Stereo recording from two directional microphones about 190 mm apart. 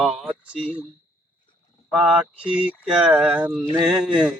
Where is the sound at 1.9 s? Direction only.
5° right (ahead or behind).